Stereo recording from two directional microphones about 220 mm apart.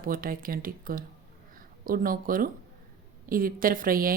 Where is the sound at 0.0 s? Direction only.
40° right (ahead or behind).